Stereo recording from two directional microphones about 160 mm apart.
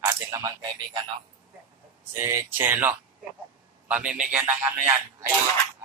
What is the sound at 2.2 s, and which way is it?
Speech, 15° right (ahead or behind).